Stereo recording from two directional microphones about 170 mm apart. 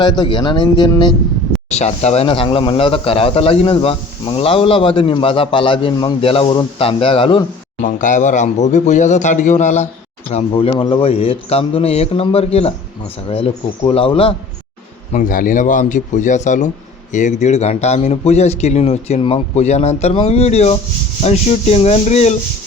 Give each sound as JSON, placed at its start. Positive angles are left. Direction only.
{"t": 0.0, "sound": "speech", "side_deg": 25}
{"t": 1.7, "sound": "speech", "side_deg": 40}
{"t": 7.8, "sound": "speech", "side_deg": 50}
{"t": 15.1, "sound": "speech", "side_deg": 55}